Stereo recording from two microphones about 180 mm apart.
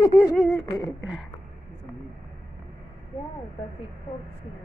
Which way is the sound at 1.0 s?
5° right (ahead or behind).